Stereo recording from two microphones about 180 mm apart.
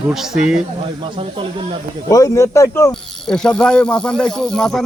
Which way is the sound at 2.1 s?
20° left (ahead or behind).